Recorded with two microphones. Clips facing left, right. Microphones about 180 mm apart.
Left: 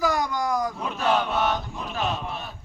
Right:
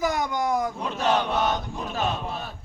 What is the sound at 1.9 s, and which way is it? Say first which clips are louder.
Speech: even; 35° right (ahead or behind).